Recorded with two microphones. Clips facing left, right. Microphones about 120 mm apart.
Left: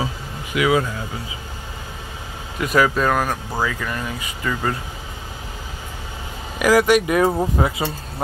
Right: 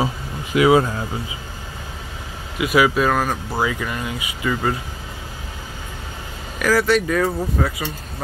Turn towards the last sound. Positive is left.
turn(degrees=20)  # may be behind; listen again after turning